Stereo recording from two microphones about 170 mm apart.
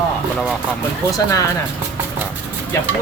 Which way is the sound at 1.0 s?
20° left (ahead or behind).